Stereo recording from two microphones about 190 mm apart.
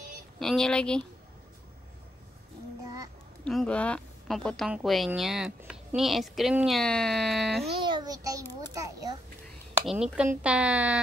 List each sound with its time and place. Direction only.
0.4 s a woman's voice: centre (ahead or behind)
3.4 s a woman's voice: 5° left (ahead or behind)
7.8 s a child's voice: 20° right (ahead or behind)
9.8 s a woman's voice: 5° right (ahead or behind)